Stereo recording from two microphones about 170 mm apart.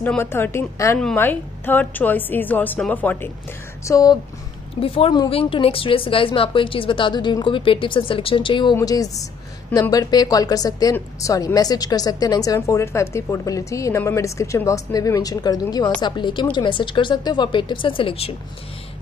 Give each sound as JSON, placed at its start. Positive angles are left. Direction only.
{"t": 0.0, "sound": "a woman's voice", "side_deg": 10}
{"t": 3.8, "sound": "speech", "side_deg": 20}
{"t": 4.8, "sound": "speech", "side_deg": 35}